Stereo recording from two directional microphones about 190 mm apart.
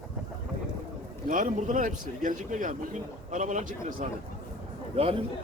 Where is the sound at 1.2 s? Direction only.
45° right (ahead or behind).